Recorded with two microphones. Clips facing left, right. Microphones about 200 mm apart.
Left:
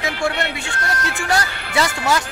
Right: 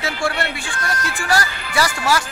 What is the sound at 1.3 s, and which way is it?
Speech, 20° left (ahead or behind).